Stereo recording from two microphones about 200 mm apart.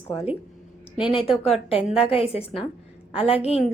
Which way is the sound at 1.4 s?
30° left (ahead or behind).